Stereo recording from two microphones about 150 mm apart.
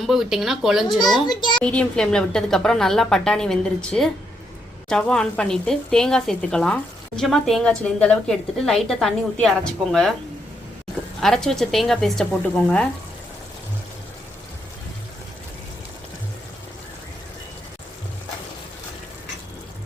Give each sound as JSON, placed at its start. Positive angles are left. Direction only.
{"t": 0.0, "sound": "a woman's voice", "side_deg": 0}
{"t": 1.3, "sound": "a child's voice", "side_deg": 30}
{"t": 1.6, "sound": "a woman's voice", "side_deg": 5}
{"t": 11.2, "sound": "a woman's voice", "side_deg": 5}